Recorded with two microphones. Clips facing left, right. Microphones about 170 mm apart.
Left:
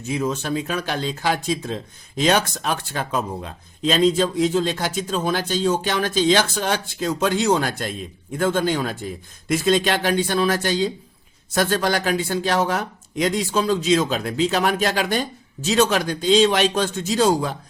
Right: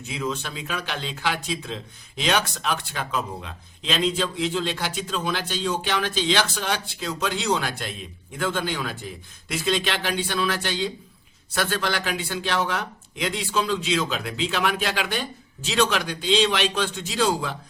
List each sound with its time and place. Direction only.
0.1 s speech: 45° left (ahead or behind)